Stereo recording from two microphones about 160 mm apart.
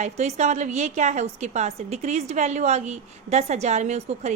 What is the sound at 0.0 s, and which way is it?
A woman's voice, 45° right (ahead or behind).